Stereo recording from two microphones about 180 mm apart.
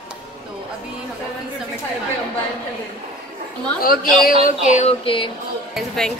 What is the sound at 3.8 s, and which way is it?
Speech, 55° left (ahead or behind).